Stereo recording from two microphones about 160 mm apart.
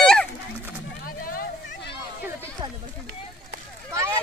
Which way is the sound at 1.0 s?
60° left (ahead or behind).